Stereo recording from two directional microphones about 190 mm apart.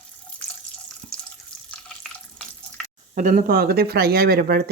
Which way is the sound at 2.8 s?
40° right (ahead or behind).